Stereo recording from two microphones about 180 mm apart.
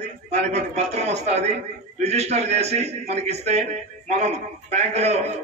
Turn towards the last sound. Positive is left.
turn(degrees=-35)  # may be behind; listen again after turning